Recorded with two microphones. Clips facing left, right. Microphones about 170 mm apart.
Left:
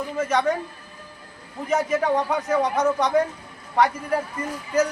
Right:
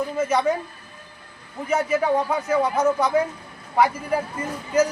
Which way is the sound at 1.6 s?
Centre (ahead or behind).